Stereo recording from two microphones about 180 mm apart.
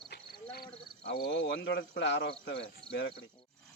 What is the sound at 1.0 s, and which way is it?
Speech, 65° left (ahead or behind).